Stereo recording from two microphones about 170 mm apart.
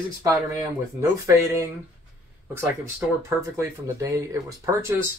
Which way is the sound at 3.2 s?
15° right (ahead or behind).